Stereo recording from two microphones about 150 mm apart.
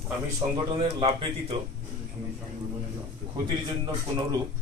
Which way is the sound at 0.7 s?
40° right (ahead or behind).